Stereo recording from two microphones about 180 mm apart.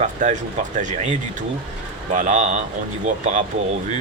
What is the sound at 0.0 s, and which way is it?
Speech, 40° right (ahead or behind).